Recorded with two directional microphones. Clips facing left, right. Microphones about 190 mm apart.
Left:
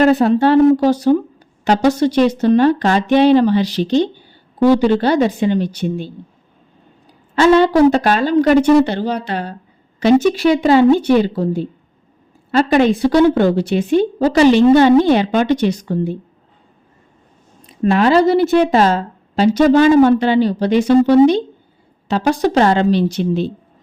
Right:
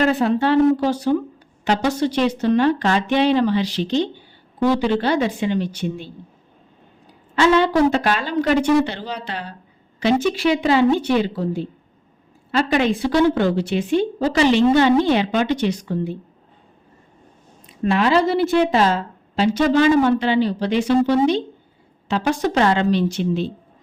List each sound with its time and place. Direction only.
0.0 s a woman's voice: 40° left (ahead or behind)
7.3 s a woman's voice: 40° left (ahead or behind)
17.8 s a woman's voice: 45° left (ahead or behind)